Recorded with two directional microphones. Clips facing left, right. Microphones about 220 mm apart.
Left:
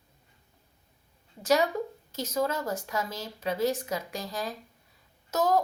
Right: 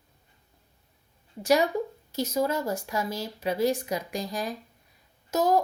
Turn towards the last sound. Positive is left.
turn(degrees=-10)  # may be behind; listen again after turning